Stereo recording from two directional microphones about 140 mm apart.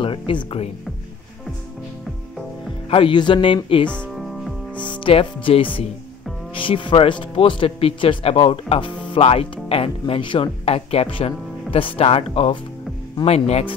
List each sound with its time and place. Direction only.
0.0 s speech: 35° left (ahead or behind)
2.9 s speech: 35° left (ahead or behind)
3.9 s music: 5° left (ahead or behind)
4.8 s speech: 35° left (ahead or behind)